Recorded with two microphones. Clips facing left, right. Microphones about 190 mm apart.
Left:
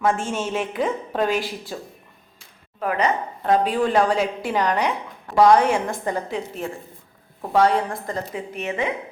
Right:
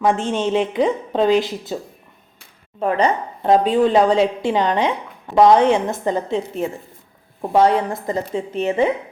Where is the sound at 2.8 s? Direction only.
30° right (ahead or behind).